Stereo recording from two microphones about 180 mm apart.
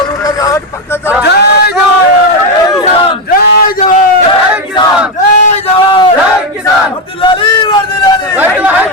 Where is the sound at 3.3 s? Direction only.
50° left (ahead or behind).